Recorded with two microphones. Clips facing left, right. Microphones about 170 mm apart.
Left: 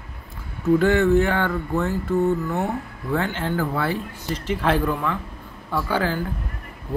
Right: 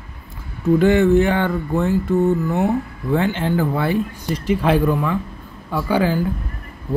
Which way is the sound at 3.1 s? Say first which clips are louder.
Right 5 dB; 20° right (ahead or behind).